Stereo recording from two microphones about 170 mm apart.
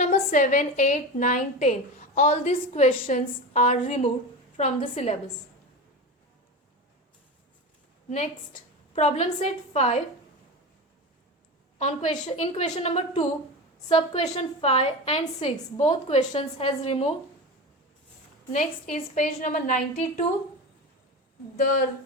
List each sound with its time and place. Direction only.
0.0 s a woman's voice: 45° left (ahead or behind)
9.0 s a woman's voice: 40° left (ahead or behind)
11.8 s a woman's voice: 40° left (ahead or behind)
18.5 s a woman's voice: 50° left (ahead or behind)